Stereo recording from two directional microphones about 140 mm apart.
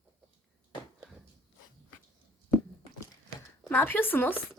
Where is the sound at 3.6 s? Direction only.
15° left (ahead or behind).